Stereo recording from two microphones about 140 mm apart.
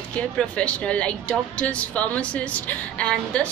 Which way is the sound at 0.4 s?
5° left (ahead or behind).